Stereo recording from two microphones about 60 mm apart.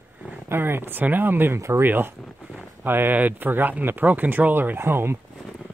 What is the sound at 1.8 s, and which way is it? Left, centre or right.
Speech, right.